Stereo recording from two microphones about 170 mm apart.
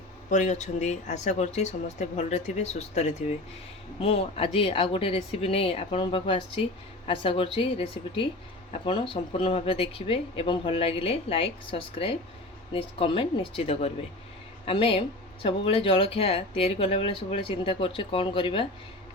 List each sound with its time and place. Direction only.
0.3 s speech: 45° left (ahead or behind); by 18.7 s 30° left (ahead or behind)